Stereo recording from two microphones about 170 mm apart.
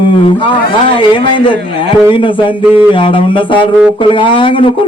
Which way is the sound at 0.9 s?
30° left (ahead or behind).